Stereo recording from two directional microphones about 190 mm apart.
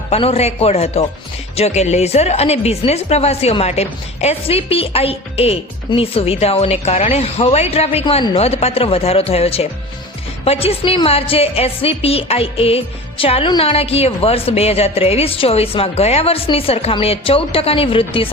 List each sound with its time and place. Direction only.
0.1 s a woman's voice: 35° left (ahead or behind)